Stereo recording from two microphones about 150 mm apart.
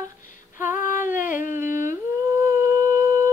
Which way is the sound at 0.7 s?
65° left (ahead or behind).